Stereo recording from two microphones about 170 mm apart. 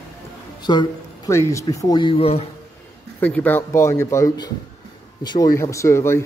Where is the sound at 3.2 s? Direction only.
10° left (ahead or behind).